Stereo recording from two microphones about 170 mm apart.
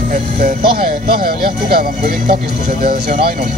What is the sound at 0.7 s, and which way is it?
Speech, 60° right (ahead or behind).